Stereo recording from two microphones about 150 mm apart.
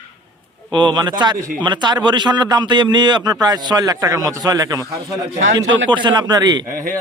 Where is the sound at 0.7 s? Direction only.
30° right (ahead or behind).